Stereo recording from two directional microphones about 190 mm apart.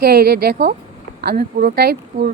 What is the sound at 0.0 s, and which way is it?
A woman's voice, 55° right (ahead or behind).